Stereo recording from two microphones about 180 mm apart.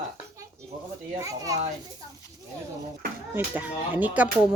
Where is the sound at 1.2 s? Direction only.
20° right (ahead or behind).